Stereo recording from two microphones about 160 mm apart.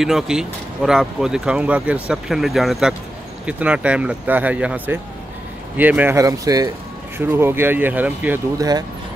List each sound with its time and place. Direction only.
0.0 s speech: 5° right (ahead or behind)
8.5 s speech: 25° right (ahead or behind)